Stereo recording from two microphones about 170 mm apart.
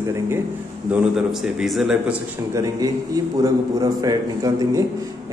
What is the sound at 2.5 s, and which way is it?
A man's voice, 20° right (ahead or behind).